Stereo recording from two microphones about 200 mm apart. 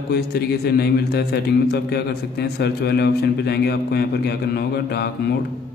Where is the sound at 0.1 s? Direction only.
55° left (ahead or behind).